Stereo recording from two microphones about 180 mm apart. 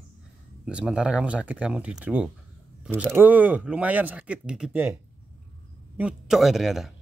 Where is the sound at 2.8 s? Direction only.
10° right (ahead or behind).